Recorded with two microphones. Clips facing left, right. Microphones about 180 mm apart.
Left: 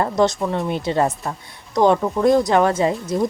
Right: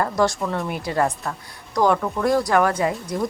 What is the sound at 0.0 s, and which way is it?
A woman's voice, 20° left (ahead or behind).